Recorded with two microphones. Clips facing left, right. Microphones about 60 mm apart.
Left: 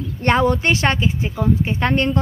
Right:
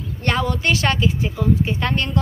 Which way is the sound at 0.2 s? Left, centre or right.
Left.